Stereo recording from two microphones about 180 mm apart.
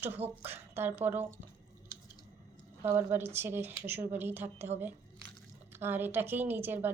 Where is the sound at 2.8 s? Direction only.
15° right (ahead or behind).